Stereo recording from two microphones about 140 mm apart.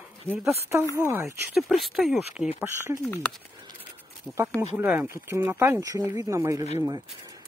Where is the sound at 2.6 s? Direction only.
20° right (ahead or behind).